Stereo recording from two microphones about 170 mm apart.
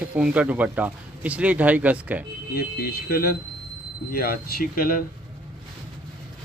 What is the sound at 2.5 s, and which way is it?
Speech, 60° left (ahead or behind).